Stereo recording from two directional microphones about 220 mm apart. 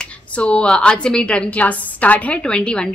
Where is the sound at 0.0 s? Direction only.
5° left (ahead or behind).